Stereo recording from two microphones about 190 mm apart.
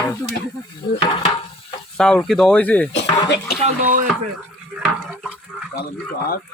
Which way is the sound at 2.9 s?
65° left (ahead or behind).